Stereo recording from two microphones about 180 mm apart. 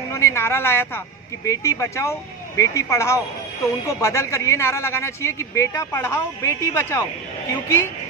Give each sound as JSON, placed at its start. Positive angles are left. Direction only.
{"t": 0.1, "sound": "a man's voice", "side_deg": 15}